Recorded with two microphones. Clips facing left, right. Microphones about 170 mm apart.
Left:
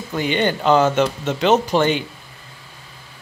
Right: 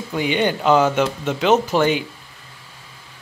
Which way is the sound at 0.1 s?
10° right (ahead or behind).